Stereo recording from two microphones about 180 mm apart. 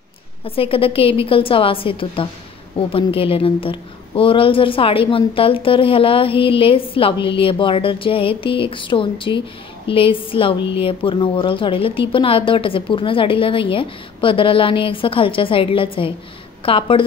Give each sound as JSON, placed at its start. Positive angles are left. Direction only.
{"t": 0.5, "sound": "a woman's voice", "side_deg": 30}